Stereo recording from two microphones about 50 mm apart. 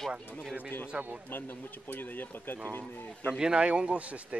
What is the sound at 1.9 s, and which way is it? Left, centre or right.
Speech, left.